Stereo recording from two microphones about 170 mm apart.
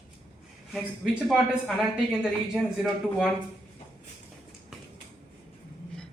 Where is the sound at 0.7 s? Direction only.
Centre (ahead or behind).